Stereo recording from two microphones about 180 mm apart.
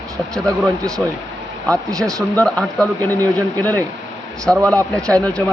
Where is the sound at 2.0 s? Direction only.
5° left (ahead or behind).